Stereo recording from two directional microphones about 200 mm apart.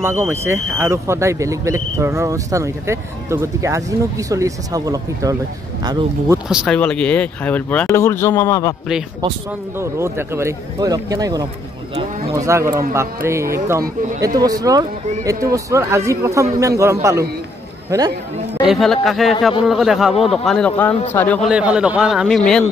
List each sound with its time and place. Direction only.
0.0 s a man's voice: 15° right (ahead or behind)
6.3 s speech: 5° right (ahead or behind); by 8.7 s 15° left (ahead or behind)
9.8 s a man's voice: 15° right (ahead or behind)
18.7 s speech: centre (ahead or behind)
21.5 s speech: 5° right (ahead or behind)